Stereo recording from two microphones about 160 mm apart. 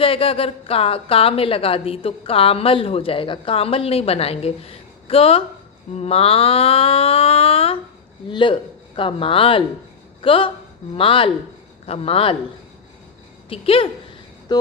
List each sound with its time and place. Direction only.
0.0 s a woman's voice: 35° left (ahead or behind)
13.5 s a woman's voice: 35° left (ahead or behind)
14.5 s a sound: 25° left (ahead or behind)